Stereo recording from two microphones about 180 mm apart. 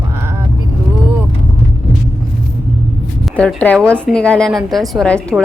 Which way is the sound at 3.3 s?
5° left (ahead or behind).